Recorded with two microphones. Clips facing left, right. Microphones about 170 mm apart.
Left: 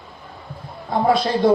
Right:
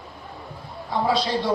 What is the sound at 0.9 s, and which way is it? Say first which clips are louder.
Music: left 4 dB; 50° left (ahead or behind).